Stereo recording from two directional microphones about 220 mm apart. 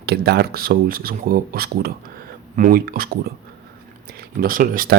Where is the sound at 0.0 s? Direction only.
45° right (ahead or behind).